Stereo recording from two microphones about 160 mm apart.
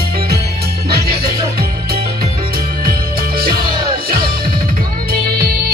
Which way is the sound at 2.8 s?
65° right (ahead or behind).